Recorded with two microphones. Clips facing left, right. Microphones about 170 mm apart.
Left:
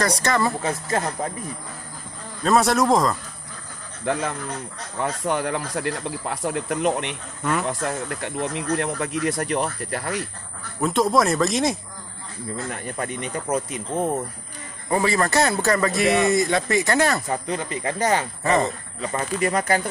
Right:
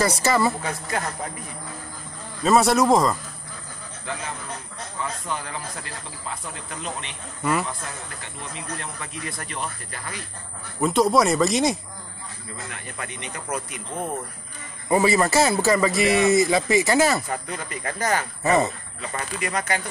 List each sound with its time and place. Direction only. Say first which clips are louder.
0.0 s a man's voice: right 1 dB; 5° right (ahead or behind)
0.6 s speech: left 4 dB; 30° left (ahead or behind)
2.4 s a man's voice: right 1 dB; centre (ahead or behind)
4.0 s speech: left 8 dB; 60° left (ahead or behind)
10.8 s a man's voice: right 1 dB; centre (ahead or behind)
12.6 s speech: left 5 dB; 40° left (ahead or behind)
14.9 s a man's voice: right 2 dB; 10° right (ahead or behind)
17.3 s speech: left 4 dB; 25° left (ahead or behind)
18.4 s speech: right 2 dB; 5° right (ahead or behind)
18.9 s speech: left 7 dB; 35° left (ahead or behind)